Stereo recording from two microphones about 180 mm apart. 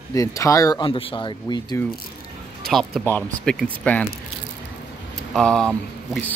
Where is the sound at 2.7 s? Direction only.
Centre (ahead or behind).